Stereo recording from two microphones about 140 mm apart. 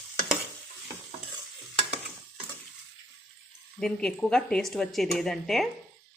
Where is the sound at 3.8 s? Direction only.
5° left (ahead or behind).